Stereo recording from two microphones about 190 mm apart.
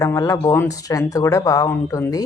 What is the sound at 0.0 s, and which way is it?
Speech, 15° left (ahead or behind).